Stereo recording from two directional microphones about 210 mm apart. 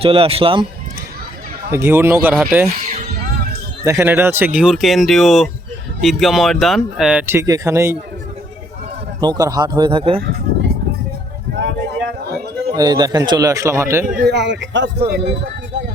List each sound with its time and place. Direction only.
0.0 s speech: 25° right (ahead or behind)
1.7 s a man's voice: 10° right (ahead or behind)
3.8 s speech: 10° right (ahead or behind)
9.2 s speech: 20° right (ahead or behind)
11.5 s a sound: 55° right (ahead or behind)
12.7 s a man's voice: 20° right (ahead or behind)
14.1 s speech: 45° right (ahead or behind)